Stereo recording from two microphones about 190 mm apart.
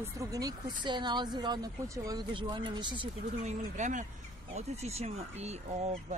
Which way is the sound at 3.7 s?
40° right (ahead or behind).